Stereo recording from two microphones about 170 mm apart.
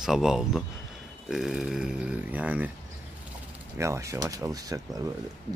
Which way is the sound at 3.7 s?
15° right (ahead or behind).